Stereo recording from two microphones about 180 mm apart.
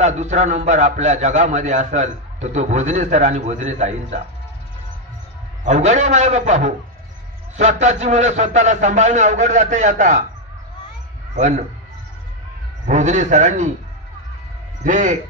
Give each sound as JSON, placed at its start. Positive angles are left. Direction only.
{"t": 0.0, "sound": "a man's voice", "side_deg": -40}
{"t": 5.6, "sound": "a man's voice", "side_deg": -40}
{"t": 11.3, "sound": "a man's voice", "side_deg": -45}
{"t": 12.8, "sound": "a man's voice", "side_deg": -40}
{"t": 14.8, "sound": "speech", "side_deg": -45}